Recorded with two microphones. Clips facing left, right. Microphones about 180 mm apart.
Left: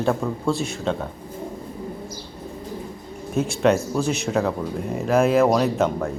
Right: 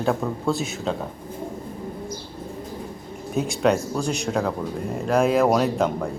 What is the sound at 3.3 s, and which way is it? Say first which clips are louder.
Speech: left 2 dB; centre (ahead or behind).